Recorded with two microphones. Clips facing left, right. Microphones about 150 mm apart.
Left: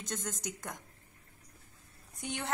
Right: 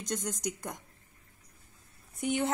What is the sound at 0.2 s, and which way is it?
Speech, 15° right (ahead or behind).